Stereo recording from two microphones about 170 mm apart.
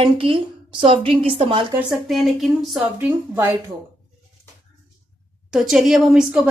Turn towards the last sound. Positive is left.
turn(degrees=-5)  # may be behind; listen again after turning